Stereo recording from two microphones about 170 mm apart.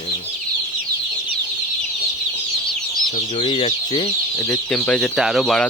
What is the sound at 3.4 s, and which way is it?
Speech, 35° left (ahead or behind).